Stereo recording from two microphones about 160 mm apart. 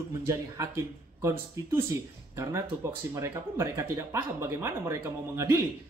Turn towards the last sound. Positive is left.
turn(degrees=-20)  # may be behind; listen again after turning